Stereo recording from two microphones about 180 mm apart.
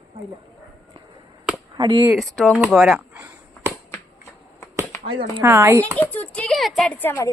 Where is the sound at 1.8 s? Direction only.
25° right (ahead or behind).